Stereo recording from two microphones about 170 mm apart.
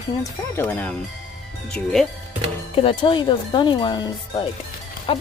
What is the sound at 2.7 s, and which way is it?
Speech, 35° left (ahead or behind).